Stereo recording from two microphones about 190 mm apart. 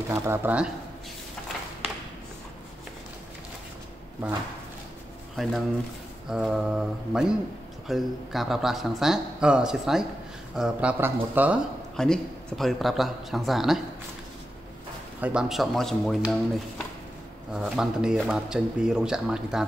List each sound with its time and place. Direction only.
0.1 s speech: 10° right (ahead or behind)
5.3 s speech: centre (ahead or behind)
12.0 s speech: centre (ahead or behind)
15.1 s speech: 5° right (ahead or behind)